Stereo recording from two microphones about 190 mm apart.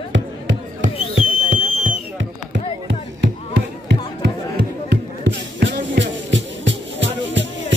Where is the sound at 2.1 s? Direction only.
70° right (ahead or behind).